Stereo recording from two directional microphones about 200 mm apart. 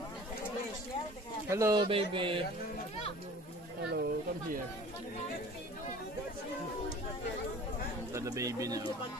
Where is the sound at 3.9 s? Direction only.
55° right (ahead or behind).